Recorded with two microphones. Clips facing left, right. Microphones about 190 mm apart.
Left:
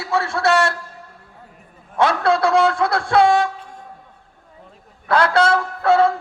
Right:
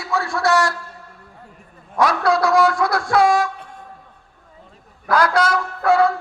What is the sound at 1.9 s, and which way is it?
Speech, 25° left (ahead or behind).